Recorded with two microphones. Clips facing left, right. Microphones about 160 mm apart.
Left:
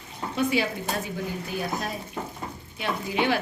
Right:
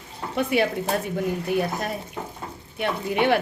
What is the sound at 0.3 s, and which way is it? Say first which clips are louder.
A woman's voice: right 3 dB; 55° right (ahead or behind).